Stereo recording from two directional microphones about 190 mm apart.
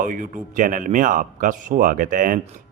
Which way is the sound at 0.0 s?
45° right (ahead or behind).